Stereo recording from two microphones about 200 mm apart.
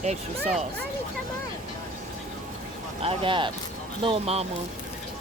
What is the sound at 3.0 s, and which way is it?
Speech, 25° right (ahead or behind).